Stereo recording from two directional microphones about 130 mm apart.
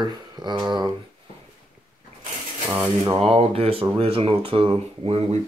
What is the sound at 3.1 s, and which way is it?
Speech, 50° right (ahead or behind).